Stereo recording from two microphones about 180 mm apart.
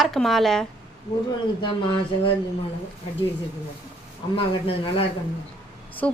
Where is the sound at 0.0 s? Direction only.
Centre (ahead or behind).